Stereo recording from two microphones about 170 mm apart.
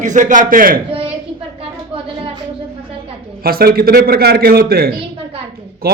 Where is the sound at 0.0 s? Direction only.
50° right (ahead or behind).